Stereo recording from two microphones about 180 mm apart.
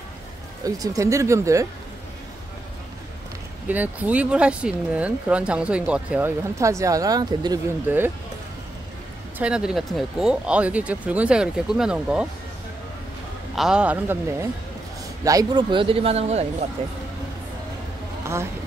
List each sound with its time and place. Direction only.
0.7 s speech: 20° right (ahead or behind)
3.6 s speech: 10° right (ahead or behind)
7.9 s speech: 10° right (ahead or behind)
9.4 s speech: 5° right (ahead or behind)
13.6 s speech: 5° right (ahead or behind)
15.2 s speech: 20° right (ahead or behind)